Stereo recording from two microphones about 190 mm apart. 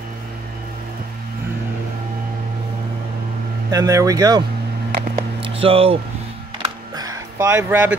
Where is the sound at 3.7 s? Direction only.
15° right (ahead or behind).